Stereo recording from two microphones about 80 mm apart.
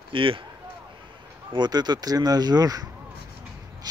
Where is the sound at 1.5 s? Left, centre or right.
Right.